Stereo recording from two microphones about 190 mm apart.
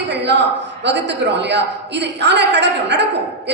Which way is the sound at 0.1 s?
65° right (ahead or behind).